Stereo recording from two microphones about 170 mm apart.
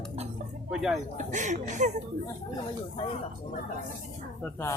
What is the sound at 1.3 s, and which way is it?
Speech, 45° right (ahead or behind).